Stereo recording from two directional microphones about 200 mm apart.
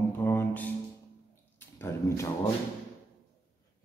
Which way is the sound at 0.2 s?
10° left (ahead or behind).